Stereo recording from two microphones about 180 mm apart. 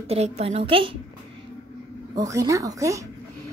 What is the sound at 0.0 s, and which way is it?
Speech, 35° right (ahead or behind).